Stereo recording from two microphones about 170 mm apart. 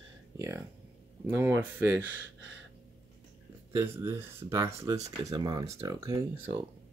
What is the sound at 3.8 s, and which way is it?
Speech, 15° right (ahead or behind).